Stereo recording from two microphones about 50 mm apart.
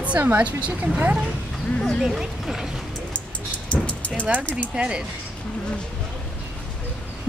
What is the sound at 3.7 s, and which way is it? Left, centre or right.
Music, left.